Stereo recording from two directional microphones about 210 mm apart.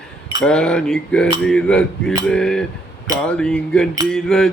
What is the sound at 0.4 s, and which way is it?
Cutlery, 5° left (ahead or behind).